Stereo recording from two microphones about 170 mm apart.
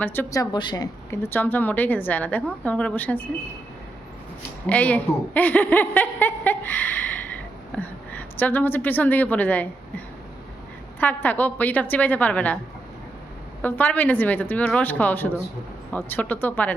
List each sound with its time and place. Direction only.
0.0 s a woman's voice: 10° left (ahead or behind)
1.1 s speech: 15° left (ahead or behind)
4.6 s a woman's voice: 10° left (ahead or behind)
11.0 s speech: 10° left (ahead or behind)
13.6 s speech: 10° left (ahead or behind)